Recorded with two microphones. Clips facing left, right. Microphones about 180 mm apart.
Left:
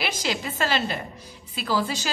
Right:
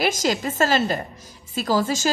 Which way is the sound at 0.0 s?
45° right (ahead or behind).